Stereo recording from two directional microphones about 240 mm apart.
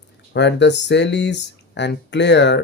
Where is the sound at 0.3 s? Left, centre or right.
Left.